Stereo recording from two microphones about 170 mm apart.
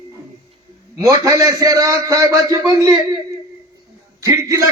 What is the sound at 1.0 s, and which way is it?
A man's voice, 20° right (ahead or behind).